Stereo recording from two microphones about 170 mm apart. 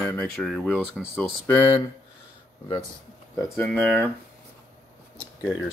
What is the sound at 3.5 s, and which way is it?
Speech, 5° left (ahead or behind).